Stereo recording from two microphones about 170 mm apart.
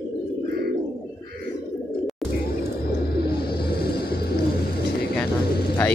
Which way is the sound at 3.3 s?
65° left (ahead or behind).